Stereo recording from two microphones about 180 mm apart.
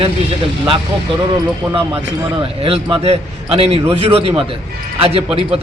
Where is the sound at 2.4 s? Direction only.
30° right (ahead or behind).